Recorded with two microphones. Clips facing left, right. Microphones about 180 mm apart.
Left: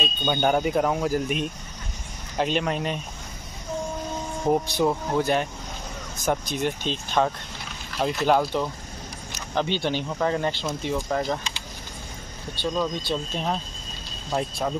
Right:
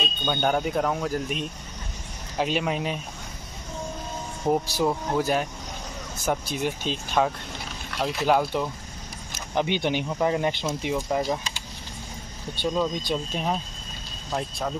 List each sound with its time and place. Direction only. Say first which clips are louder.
0.0 s speech: left 2 dB; centre (ahead or behind)
4.5 s speech: left 1 dB; centre (ahead or behind)
9.6 s speech: right 1 dB; 15° right (ahead or behind)
12.6 s speech: right 1 dB; 15° right (ahead or behind)